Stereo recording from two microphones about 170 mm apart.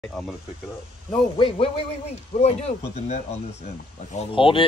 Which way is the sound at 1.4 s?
35° left (ahead or behind).